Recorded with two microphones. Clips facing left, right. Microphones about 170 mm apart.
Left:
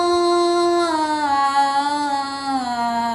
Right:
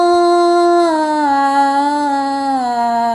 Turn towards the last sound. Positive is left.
turn(degrees=-50)  # may be behind; listen again after turning